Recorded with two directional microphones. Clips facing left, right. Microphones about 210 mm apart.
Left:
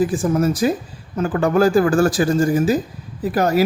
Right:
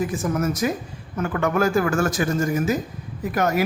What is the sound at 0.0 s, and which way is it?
Speech, 30° left (ahead or behind).